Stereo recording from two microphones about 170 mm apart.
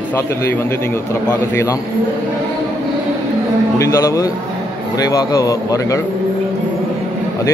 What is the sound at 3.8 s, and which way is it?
A man's voice, 20° left (ahead or behind).